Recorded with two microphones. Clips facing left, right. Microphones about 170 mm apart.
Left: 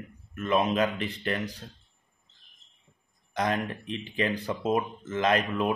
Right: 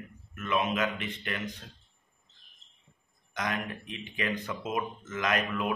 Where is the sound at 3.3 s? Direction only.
35° left (ahead or behind).